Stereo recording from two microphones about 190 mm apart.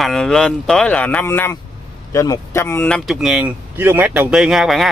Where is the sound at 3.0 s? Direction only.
Centre (ahead or behind).